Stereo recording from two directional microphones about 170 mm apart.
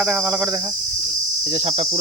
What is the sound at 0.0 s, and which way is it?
Cricket, 10° right (ahead or behind).